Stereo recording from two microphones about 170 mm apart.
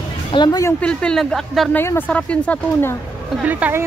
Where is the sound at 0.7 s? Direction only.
5° left (ahead or behind).